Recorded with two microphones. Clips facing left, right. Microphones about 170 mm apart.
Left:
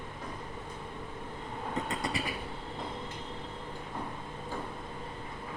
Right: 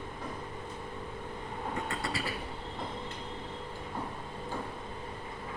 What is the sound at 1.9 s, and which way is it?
Vehicle, 20° left (ahead or behind).